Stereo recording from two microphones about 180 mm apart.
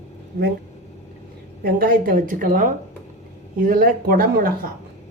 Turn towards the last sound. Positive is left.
turn(degrees=-55)  # may be behind; listen again after turning